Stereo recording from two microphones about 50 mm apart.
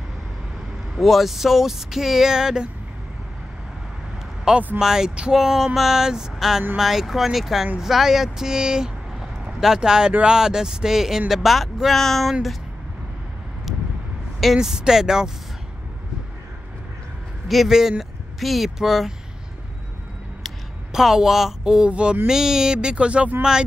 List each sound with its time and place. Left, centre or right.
0.9 s speech: centre
4.7 s speech: centre
14.4 s speech: centre
17.5 s speech: centre
20.4 s speech: centre
22.3 s speech: centre